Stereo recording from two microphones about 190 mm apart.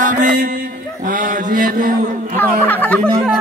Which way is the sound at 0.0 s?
45° right (ahead or behind).